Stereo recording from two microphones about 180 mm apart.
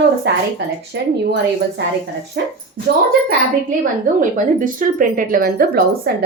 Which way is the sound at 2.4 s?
70° right (ahead or behind).